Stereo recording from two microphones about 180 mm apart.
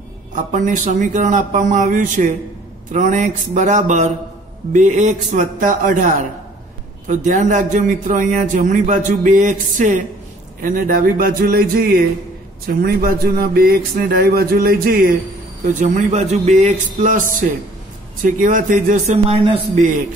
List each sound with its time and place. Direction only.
0.5 s a man's voice: 45° right (ahead or behind)
15.6 s a man's voice: 45° right (ahead or behind)